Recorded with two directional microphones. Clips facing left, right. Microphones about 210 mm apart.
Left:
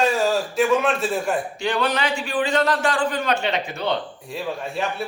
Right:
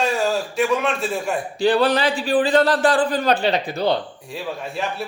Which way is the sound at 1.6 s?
35° right (ahead or behind).